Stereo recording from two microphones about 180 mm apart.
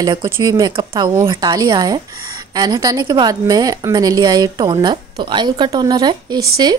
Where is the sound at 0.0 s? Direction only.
25° right (ahead or behind).